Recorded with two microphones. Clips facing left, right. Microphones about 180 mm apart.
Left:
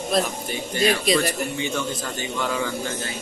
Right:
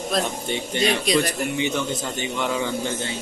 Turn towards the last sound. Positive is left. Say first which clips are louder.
# right 2 dB
turn(degrees=-20)  # may be behind; listen again after turning